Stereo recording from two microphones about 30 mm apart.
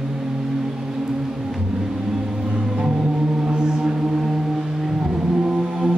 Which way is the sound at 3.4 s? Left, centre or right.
Right.